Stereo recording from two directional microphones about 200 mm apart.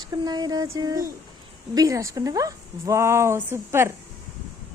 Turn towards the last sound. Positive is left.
turn(degrees=-15)  # may be behind; listen again after turning